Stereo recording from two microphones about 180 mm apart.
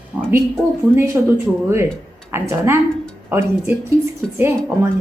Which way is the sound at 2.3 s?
15° right (ahead or behind).